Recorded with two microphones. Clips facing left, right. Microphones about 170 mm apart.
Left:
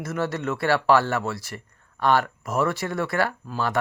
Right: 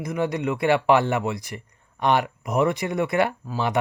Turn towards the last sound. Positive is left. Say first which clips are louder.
# right 3 dB
turn(degrees=-20)  # may be behind; listen again after turning